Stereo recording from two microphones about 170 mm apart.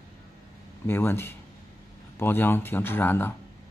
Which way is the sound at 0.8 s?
15° left (ahead or behind).